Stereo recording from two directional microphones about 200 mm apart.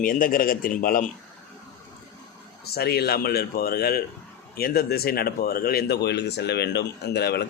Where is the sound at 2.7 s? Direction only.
50° left (ahead or behind).